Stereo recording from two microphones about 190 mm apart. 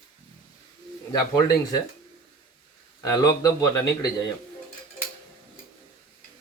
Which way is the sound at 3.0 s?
20° left (ahead or behind).